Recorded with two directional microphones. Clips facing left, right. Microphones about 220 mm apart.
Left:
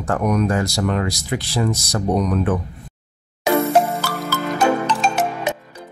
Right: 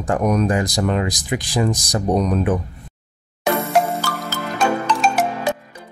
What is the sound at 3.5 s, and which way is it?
Music, 5° left (ahead or behind).